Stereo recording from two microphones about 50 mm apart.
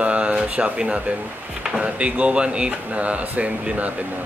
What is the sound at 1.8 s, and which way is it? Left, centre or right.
Speech, right.